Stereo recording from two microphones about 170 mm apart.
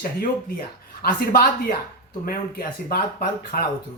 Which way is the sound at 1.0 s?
65° left (ahead or behind).